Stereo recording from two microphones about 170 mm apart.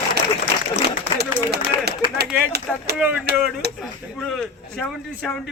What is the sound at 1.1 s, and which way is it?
Speech, 75° right (ahead or behind).